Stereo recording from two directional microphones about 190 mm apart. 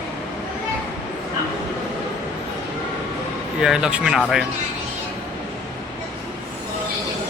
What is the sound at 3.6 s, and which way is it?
Speech, 5° right (ahead or behind).